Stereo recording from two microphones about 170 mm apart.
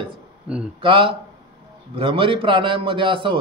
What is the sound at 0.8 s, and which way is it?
A man's voice, 30° right (ahead or behind).